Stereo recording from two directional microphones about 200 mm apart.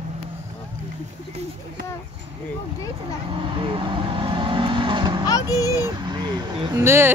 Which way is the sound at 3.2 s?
25° right (ahead or behind).